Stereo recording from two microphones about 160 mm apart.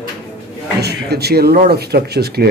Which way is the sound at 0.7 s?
90° right.